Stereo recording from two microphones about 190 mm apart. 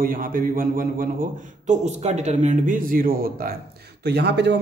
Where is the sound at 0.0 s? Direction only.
50° right (ahead or behind).